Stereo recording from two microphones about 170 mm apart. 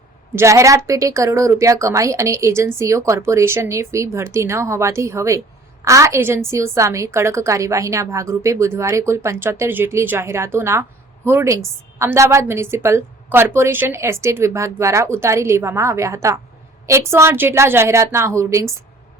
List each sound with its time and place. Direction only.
0.3 s a woman's voice: 15° right (ahead or behind)